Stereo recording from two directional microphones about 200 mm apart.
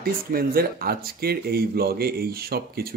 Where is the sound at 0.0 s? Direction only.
50° right (ahead or behind).